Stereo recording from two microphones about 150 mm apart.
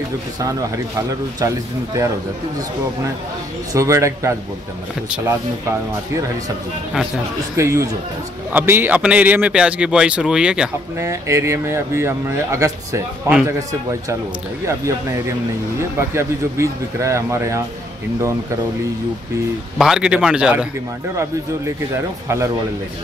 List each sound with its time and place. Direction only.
0.4 s speech: 20° right (ahead or behind)
3.7 s speech: 20° right (ahead or behind)
7.5 s speech: 20° right (ahead or behind)
11.0 s speech: 20° right (ahead or behind)
19.8 s a man's voice: 5° right (ahead or behind)
21.9 s speech: 20° right (ahead or behind)